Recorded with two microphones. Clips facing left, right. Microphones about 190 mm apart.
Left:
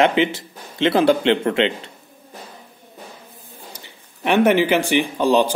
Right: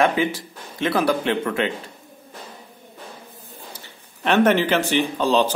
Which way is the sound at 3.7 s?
15° left (ahead or behind).